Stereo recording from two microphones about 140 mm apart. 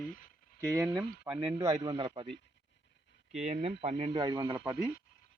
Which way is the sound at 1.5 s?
25° right (ahead or behind).